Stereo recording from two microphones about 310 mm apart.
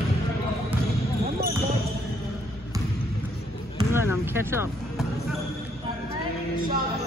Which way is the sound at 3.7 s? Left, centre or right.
Centre.